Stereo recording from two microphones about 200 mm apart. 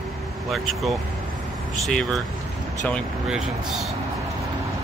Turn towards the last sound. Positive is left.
turn(degrees=0)  # may be behind; listen again after turning